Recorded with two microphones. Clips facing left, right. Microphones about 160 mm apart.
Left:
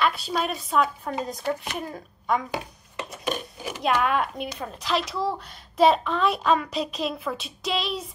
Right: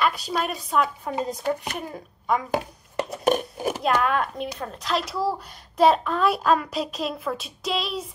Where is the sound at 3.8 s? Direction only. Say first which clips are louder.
Left 1 dB; 5° left (ahead or behind).